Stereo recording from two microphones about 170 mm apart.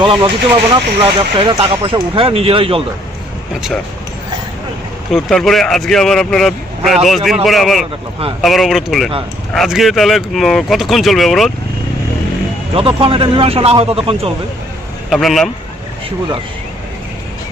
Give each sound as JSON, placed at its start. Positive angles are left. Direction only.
{"t": 0.0, "sound": "speech", "side_deg": -30}
{"t": 5.1, "sound": "speech", "side_deg": 0}
{"t": 12.7, "sound": "speech", "side_deg": -35}
{"t": 15.1, "sound": "speech", "side_deg": 0}